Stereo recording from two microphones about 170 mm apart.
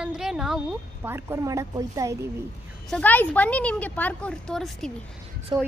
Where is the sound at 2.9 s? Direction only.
10° left (ahead or behind).